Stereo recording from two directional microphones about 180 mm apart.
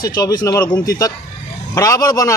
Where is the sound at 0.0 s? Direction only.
20° left (ahead or behind).